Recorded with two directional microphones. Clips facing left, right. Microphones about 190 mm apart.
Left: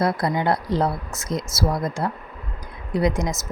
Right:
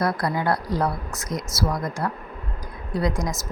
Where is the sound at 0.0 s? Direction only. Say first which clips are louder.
Left 2 dB; 25° left (ahead or behind).